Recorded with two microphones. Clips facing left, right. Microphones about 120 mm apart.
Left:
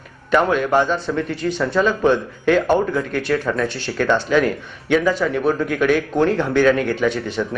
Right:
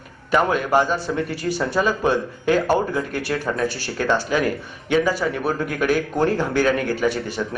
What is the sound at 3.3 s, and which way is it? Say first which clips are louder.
Speech: left 6 dB; 30° right (ahead or behind).